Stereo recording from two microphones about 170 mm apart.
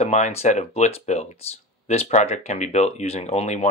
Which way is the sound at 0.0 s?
45° left (ahead or behind).